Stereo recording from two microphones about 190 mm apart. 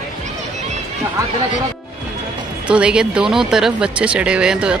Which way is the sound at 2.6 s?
5° right (ahead or behind).